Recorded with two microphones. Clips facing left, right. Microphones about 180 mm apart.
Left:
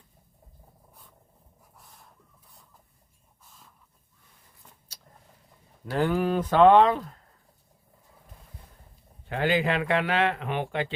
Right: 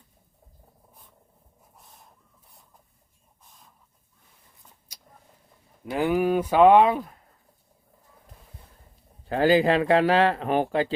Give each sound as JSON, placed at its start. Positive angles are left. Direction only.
{"t": 1.7, "sound": "bird", "side_deg": -20}
{"t": 4.9, "sound": "vehicle", "side_deg": -10}
{"t": 5.8, "sound": "speech", "side_deg": -10}
{"t": 9.2, "sound": "speech", "side_deg": -35}